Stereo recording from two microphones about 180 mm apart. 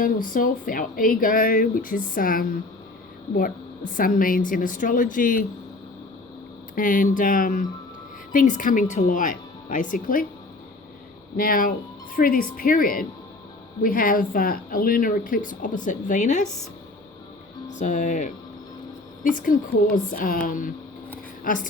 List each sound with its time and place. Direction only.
0.0 s speech: 50° left (ahead or behind)
6.7 s speech: 50° left (ahead or behind)
11.3 s speech: 50° left (ahead or behind)
17.7 s speech: 45° left (ahead or behind)